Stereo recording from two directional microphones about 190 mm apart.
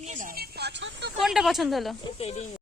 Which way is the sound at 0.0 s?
40° right (ahead or behind).